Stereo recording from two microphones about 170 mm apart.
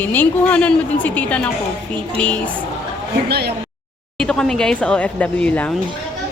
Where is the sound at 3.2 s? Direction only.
70° right (ahead or behind).